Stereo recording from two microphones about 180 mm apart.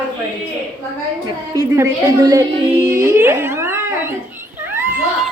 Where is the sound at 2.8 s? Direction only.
15° right (ahead or behind).